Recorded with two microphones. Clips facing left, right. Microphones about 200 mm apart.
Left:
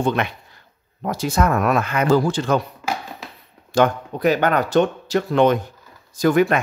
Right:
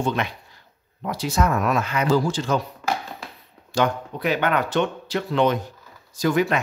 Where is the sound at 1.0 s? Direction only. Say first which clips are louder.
Left 3 dB; 50° left (ahead or behind).